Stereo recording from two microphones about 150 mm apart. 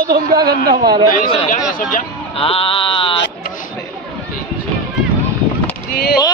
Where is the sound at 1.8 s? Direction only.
60° left (ahead or behind).